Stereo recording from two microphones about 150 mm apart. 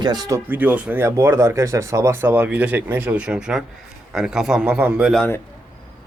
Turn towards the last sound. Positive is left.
turn(degrees=-5)  # may be behind; listen again after turning